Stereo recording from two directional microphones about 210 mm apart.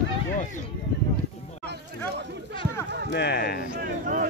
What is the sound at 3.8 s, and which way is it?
Speech, 40° right (ahead or behind).